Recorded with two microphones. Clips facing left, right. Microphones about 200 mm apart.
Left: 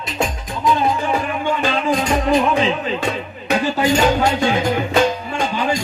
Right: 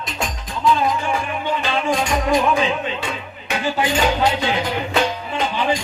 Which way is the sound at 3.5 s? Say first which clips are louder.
Left 4 dB; 40° left (ahead or behind).